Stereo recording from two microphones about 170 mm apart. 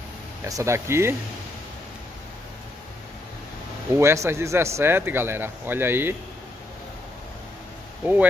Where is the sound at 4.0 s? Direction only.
15° right (ahead or behind).